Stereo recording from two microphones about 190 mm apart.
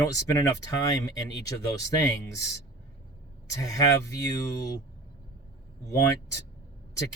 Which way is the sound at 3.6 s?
15° left (ahead or behind).